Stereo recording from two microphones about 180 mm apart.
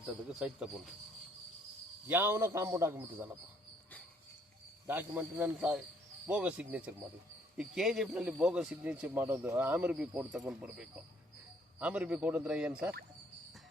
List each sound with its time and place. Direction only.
0.0 s speech: 5° right (ahead or behind)
2.0 s a man's voice: 10° right (ahead or behind)
4.9 s a man's voice: 10° right (ahead or behind)